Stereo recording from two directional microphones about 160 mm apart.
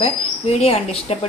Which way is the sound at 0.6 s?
40° left (ahead or behind).